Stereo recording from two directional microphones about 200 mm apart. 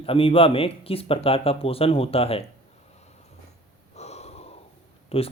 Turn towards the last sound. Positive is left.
turn(degrees=30)  # may be behind; listen again after turning